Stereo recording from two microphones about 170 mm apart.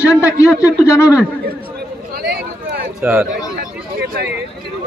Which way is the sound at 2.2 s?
65° right (ahead or behind).